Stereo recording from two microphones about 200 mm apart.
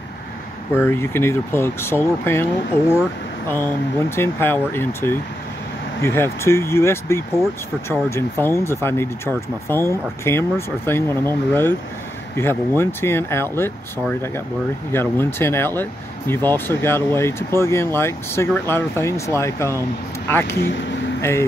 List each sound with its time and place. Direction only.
0.7 s speech: 10° left (ahead or behind)
20.5 s speech: 65° left (ahead or behind)
21.2 s speech: 15° left (ahead or behind)